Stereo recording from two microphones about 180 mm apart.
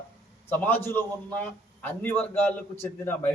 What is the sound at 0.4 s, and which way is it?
A man's voice, 10° left (ahead or behind).